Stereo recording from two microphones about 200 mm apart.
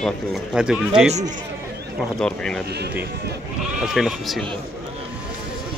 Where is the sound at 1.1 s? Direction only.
35° right (ahead or behind).